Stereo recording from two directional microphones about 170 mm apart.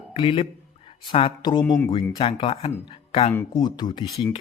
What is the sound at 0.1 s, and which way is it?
Speech, 30° left (ahead or behind).